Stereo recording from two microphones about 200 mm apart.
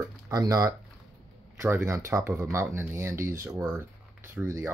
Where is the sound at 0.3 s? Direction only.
20° right (ahead or behind).